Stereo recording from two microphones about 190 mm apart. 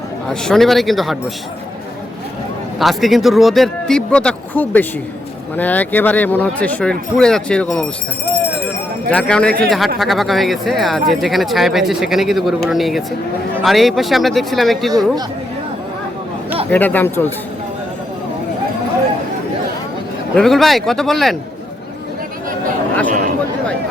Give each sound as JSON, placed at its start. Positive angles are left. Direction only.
{"t": 0.3, "sound": "speech", "side_deg": 0}
{"t": 2.7, "sound": "speech", "side_deg": 0}
{"t": 9.0, "sound": "speech", "side_deg": 5}
{"t": 16.7, "sound": "speech", "side_deg": 10}
{"t": 20.3, "sound": "speech", "side_deg": 0}
{"t": 23.0, "sound": "speech", "side_deg": -45}